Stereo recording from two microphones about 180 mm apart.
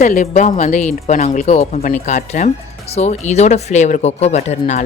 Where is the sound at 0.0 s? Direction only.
45° left (ahead or behind).